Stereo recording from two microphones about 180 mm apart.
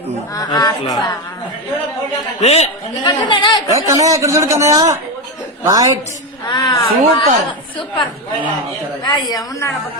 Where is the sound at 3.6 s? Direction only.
20° right (ahead or behind).